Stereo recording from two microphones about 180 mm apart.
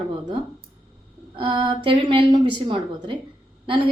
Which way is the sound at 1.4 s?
30° right (ahead or behind).